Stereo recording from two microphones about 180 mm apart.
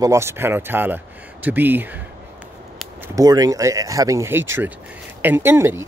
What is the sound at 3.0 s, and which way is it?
Speech, 20° right (ahead or behind).